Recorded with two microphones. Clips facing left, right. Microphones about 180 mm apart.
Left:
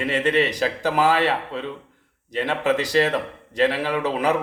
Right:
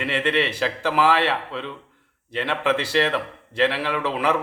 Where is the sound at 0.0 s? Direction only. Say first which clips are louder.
Left 2 dB; 40° left (ahead or behind).